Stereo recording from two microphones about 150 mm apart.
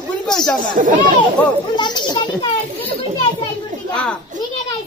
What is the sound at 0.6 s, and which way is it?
Speech, 60° right (ahead or behind).